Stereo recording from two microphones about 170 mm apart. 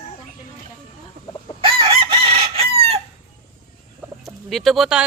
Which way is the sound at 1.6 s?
30° right (ahead or behind).